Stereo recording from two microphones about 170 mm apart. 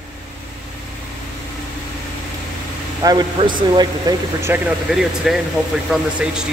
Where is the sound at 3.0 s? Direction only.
25° right (ahead or behind).